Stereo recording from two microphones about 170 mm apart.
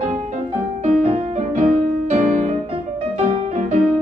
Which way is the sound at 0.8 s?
35° right (ahead or behind).